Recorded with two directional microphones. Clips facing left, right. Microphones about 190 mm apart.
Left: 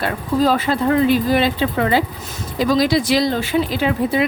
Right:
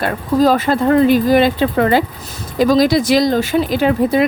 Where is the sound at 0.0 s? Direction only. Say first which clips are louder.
Right 4 dB; 45° right (ahead or behind).